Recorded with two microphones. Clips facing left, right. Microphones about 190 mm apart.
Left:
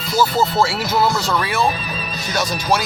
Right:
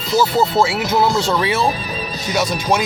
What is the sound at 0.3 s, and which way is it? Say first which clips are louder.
Speech: right 2 dB; 15° right (ahead or behind).